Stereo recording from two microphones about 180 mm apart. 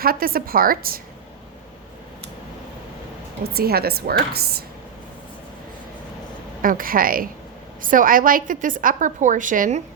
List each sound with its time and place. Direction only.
0.0 s a woman's voice: 55° right (ahead or behind)
3.5 s a woman's voice: 60° right (ahead or behind)
6.6 s a woman's voice: 50° right (ahead or behind)